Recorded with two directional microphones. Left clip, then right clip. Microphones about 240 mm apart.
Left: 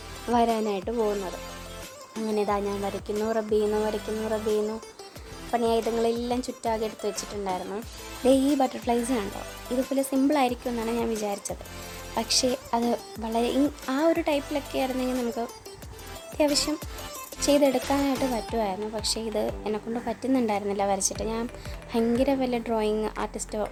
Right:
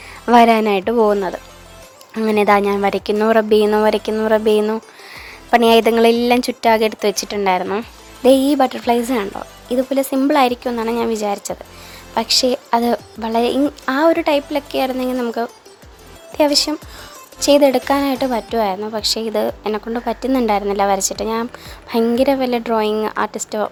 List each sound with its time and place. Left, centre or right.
0.3 s a woman's voice: right
2.2 s a woman's voice: right